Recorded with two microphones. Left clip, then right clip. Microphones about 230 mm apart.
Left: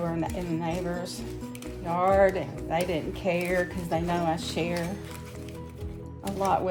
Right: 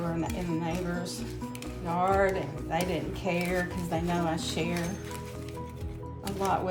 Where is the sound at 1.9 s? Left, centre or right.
Left.